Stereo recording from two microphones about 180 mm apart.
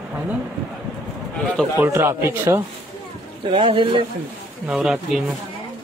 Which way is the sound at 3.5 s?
30° right (ahead or behind).